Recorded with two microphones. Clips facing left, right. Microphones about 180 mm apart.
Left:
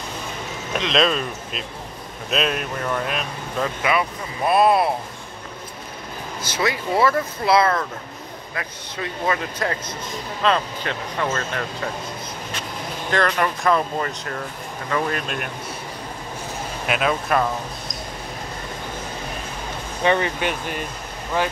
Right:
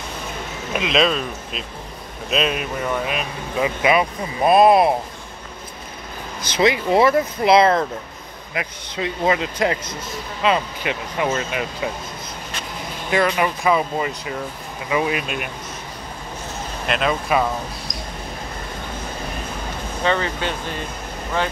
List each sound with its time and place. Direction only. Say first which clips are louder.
0.7 s speech: right 1 dB; 5° right (ahead or behind)
3.8 s speech: right 5 dB; 20° right (ahead or behind)
6.5 s speech: right 6 dB; 20° right (ahead or behind)
13.1 s speech: right 2 dB; 5° right (ahead or behind)
16.8 s speech: right 1 dB; 5° left (ahead or behind)
20.0 s speech: left 2 dB; 15° left (ahead or behind)